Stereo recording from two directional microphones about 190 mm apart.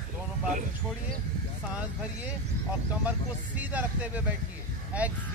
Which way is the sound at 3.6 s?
10° right (ahead or behind).